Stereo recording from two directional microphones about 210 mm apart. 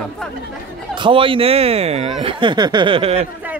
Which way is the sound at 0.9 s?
25° right (ahead or behind).